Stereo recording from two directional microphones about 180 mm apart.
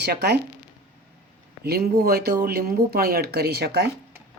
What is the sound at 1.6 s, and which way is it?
Speech, 60° right (ahead or behind).